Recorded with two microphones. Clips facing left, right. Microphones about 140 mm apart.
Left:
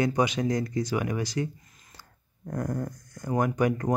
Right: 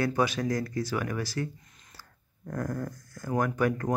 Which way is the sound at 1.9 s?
20° left (ahead or behind).